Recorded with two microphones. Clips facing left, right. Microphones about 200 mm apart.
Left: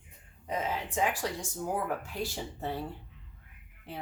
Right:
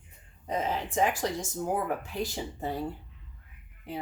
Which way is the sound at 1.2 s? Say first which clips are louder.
Right 4 dB; 20° right (ahead or behind).